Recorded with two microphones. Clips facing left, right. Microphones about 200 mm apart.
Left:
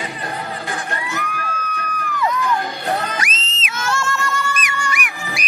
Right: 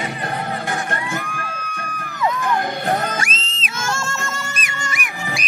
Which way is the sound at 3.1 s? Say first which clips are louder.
Even; 30° right (ahead or behind).